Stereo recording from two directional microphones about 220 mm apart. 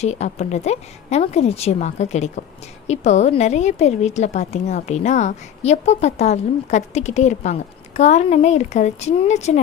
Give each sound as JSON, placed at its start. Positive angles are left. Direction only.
{"t": 0.0, "sound": "a woman's voice", "side_deg": 30}